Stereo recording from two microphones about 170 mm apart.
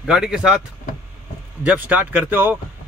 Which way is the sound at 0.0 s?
5° right (ahead or behind).